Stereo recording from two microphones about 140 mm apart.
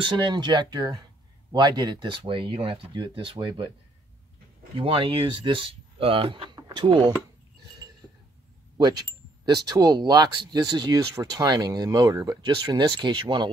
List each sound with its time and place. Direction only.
0.0 s speech: 30° right (ahead or behind)
4.7 s speech: 40° right (ahead or behind)
9.4 s speech: 30° right (ahead or behind)